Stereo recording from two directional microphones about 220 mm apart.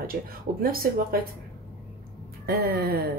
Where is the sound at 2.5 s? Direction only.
45° right (ahead or behind).